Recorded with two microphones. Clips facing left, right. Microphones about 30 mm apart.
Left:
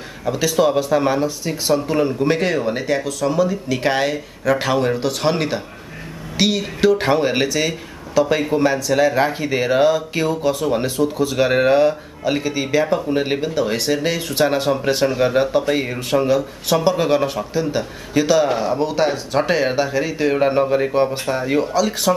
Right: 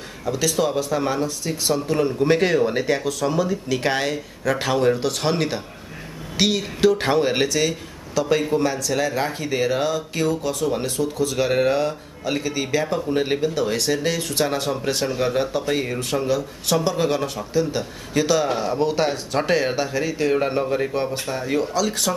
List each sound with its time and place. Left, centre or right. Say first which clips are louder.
0.2 s speech: left 4 dB; centre